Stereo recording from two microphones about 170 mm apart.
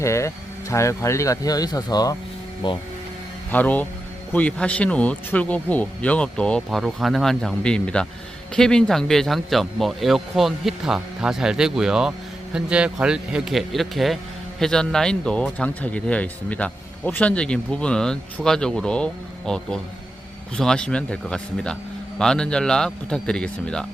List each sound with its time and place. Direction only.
0.0 s speech: 15° left (ahead or behind)
3.5 s speech: 10° left (ahead or behind)